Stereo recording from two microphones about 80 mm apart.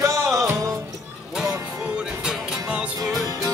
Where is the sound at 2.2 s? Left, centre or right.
Centre.